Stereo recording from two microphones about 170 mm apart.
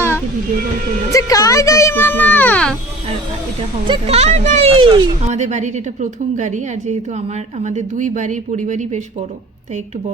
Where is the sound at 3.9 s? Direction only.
35° right (ahead or behind).